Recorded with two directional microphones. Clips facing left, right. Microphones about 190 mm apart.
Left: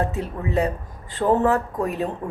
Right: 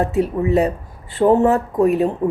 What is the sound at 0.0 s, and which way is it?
A woman's voice, 15° right (ahead or behind).